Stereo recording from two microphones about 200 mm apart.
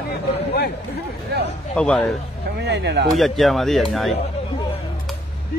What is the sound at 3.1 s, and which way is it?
Speech, centre (ahead or behind).